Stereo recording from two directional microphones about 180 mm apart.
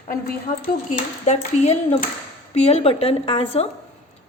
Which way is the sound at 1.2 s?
40° left (ahead or behind).